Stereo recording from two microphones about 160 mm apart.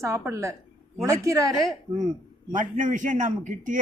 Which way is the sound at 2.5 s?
55° right (ahead or behind).